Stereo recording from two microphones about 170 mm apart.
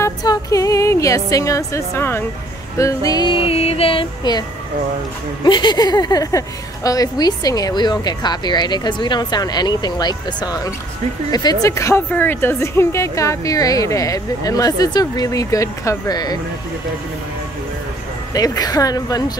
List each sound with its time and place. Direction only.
0.0 s speech: 20° left (ahead or behind)
18.3 s speech: 20° left (ahead or behind)